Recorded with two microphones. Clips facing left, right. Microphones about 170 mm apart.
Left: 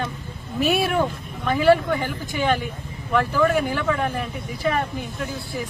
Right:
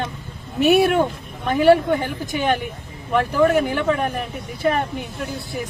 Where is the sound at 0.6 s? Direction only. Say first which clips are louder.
Right 5 dB; 20° right (ahead or behind).